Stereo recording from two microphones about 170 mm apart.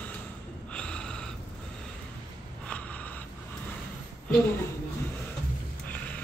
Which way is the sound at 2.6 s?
10° left (ahead or behind).